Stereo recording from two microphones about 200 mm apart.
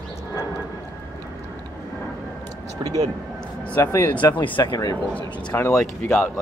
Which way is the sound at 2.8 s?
20° right (ahead or behind).